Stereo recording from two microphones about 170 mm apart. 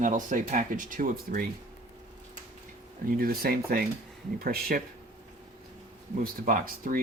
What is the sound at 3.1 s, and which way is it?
Speech, 60° right (ahead or behind).